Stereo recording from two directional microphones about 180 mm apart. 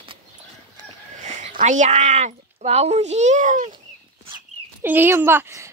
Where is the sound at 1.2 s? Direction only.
40° right (ahead or behind).